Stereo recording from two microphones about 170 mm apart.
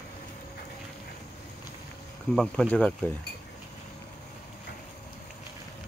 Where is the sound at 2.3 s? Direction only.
5° left (ahead or behind).